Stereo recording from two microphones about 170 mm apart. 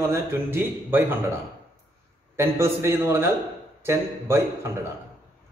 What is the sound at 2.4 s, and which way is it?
A man's voice, 15° right (ahead or behind).